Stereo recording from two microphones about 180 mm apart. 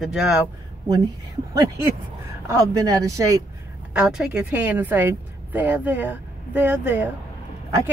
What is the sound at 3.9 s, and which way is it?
Speech, 5° right (ahead or behind).